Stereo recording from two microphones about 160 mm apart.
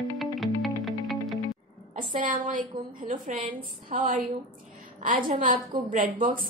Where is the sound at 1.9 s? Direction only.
55° right (ahead or behind).